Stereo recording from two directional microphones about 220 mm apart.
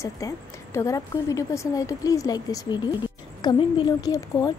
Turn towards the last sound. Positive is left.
turn(degrees=15)  # may be behind; listen again after turning